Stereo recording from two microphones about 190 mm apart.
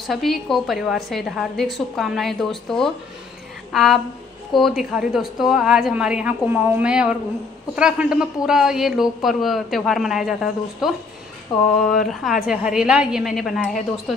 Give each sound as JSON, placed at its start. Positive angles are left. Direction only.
{"t": 0.0, "sound": "a woman's voice", "side_deg": 0}
{"t": 11.5, "sound": "a sound", "side_deg": 25}
{"t": 12.1, "sound": "a woman's voice", "side_deg": 0}